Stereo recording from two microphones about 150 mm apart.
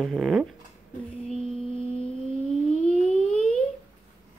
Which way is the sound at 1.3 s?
5° left (ahead or behind).